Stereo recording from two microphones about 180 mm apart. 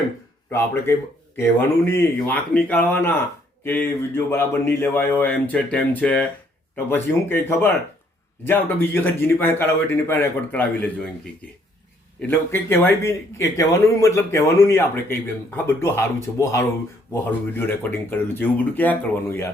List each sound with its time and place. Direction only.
0.5 s a man's voice: 15° left (ahead or behind)
12.5 s a man's voice: 15° left (ahead or behind)